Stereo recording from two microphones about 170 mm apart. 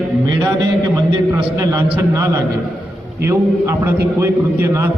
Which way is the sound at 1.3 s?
15° right (ahead or behind).